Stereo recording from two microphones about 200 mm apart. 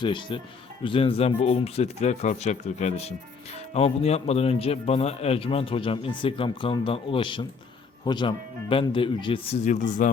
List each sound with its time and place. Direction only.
0.0 s a man's voice: 25° left (ahead or behind)